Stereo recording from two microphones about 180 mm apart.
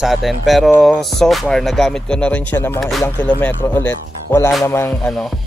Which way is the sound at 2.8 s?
Centre (ahead or behind).